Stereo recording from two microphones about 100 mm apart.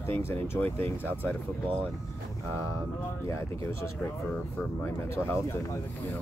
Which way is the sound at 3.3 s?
30° left (ahead or behind).